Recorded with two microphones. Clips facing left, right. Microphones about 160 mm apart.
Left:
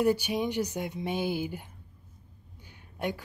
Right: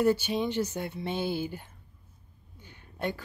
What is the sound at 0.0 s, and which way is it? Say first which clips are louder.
Speech: right 1 dB; 10° left (ahead or behind).